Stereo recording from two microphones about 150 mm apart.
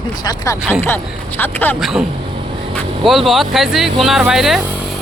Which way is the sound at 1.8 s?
5° right (ahead or behind).